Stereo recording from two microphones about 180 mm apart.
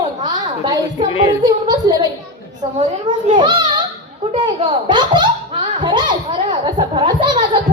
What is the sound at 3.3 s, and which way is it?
Children playing, 25° right (ahead or behind).